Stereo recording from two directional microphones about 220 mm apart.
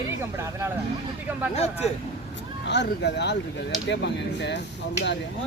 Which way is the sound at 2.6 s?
50° left (ahead or behind).